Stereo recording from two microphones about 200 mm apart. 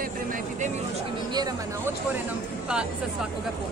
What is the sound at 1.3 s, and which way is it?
Speech, 10° right (ahead or behind).